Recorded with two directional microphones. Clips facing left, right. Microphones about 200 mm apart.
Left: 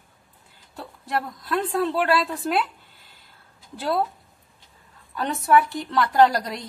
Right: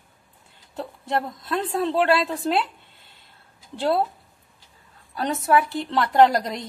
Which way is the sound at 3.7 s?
25° right (ahead or behind).